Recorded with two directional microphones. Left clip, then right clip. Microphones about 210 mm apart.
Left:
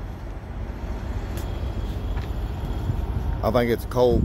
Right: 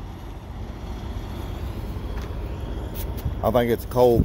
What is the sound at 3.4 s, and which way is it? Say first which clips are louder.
Speech: right 1 dB; 15° right (ahead or behind).